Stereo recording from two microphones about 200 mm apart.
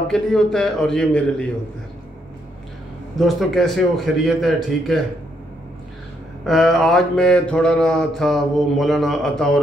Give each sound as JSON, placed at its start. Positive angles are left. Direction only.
{"t": 0.1, "sound": "mantra", "side_deg": 0}
{"t": 3.2, "sound": "mantra", "side_deg": 0}
{"t": 6.4, "sound": "mantra", "side_deg": 0}